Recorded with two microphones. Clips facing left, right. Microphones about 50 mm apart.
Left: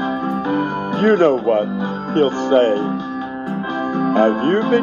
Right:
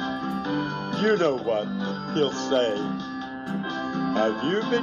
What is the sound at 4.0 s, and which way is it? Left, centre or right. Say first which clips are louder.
Music: left 9 dB; left.